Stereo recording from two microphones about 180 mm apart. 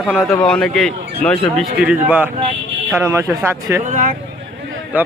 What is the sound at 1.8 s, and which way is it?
Speech, 5° right (ahead or behind).